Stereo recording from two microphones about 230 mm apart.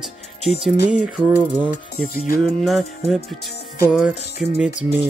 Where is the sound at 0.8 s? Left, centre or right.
Centre.